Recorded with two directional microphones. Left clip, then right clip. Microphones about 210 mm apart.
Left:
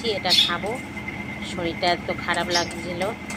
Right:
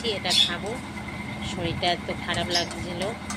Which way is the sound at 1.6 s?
15° right (ahead or behind).